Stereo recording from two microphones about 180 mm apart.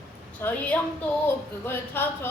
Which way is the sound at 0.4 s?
10° left (ahead or behind).